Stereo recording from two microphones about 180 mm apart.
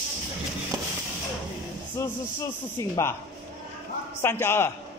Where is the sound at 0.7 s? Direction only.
20° right (ahead or behind).